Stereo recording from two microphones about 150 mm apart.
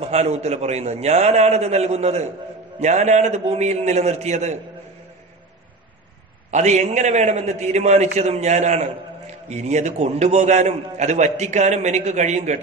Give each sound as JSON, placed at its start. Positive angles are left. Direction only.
{"t": 0.0, "sound": "a man's voice", "side_deg": -45}
{"t": 6.5, "sound": "a man's voice", "side_deg": -50}